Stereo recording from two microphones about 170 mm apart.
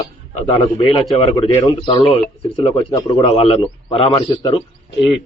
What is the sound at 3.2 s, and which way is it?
A man's voice, 35° left (ahead or behind).